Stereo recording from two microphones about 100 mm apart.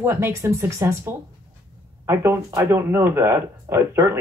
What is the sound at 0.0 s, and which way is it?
Speech, 25° right (ahead or behind).